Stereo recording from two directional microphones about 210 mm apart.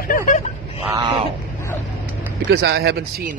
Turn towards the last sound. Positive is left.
turn(degrees=-50)  # may be behind; listen again after turning